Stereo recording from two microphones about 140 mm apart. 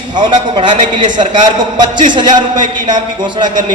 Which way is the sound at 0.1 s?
35° right (ahead or behind).